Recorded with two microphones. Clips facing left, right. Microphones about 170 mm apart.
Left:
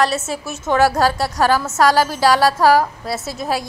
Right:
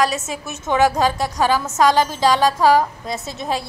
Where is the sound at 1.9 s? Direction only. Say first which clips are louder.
Left 2 dB; 10° left (ahead or behind).